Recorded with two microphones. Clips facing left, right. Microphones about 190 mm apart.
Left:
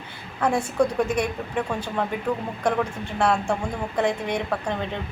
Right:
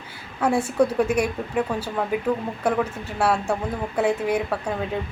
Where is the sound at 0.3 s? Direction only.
10° right (ahead or behind).